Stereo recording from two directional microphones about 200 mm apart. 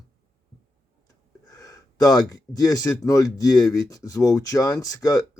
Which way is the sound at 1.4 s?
20° left (ahead or behind).